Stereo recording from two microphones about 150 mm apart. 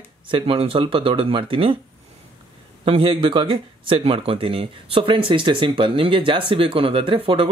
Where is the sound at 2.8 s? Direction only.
35° right (ahead or behind).